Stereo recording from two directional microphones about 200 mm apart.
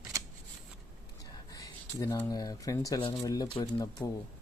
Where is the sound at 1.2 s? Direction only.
15° left (ahead or behind).